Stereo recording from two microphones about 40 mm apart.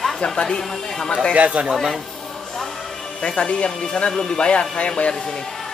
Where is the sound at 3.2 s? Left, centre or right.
Left.